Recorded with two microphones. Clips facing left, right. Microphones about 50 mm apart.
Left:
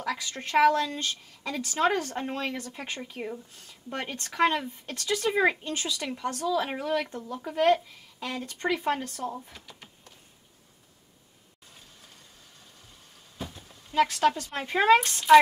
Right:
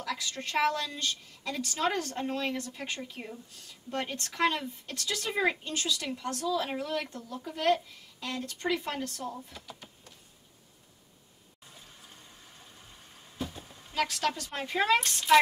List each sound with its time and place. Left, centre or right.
0.0 s a woman's voice: left
0.6 s a woman's voice: centre
0.8 s speech: left
8.2 s speech: centre
8.5 s speech: left
9.5 s speech: left
13.9 s a woman's voice: centre
14.7 s speech: left
15.0 s speech: centre